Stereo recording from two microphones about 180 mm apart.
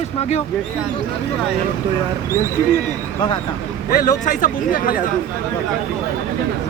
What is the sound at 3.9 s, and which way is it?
Speech, 50° left (ahead or behind).